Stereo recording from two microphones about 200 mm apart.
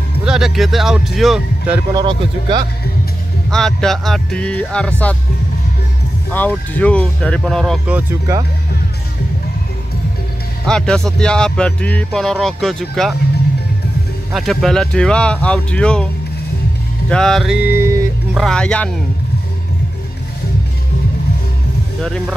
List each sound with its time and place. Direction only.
0.2 s speech: 5° right (ahead or behind)
2.0 s speech: 20° right (ahead or behind)
3.4 s speech: centre (ahead or behind)
6.3 s speech: 10° left (ahead or behind); by 8.4 s 10° right (ahead or behind)
10.7 s speech: 5° left (ahead or behind)
14.3 s speech: centre (ahead or behind)
17.1 s speech: centre (ahead or behind); by 18.4 s 15° right (ahead or behind)
18.4 s speech: 5° left (ahead or behind)
22.0 s speech: 5° left (ahead or behind)